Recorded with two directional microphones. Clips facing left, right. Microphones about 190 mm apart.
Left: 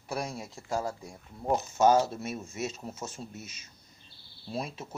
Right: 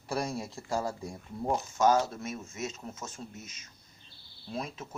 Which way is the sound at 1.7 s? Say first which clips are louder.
Left 2 dB; 25° left (ahead or behind).